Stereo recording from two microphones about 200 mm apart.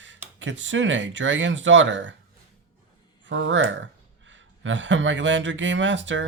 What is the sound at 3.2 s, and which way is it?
Speech, 70° right (ahead or behind).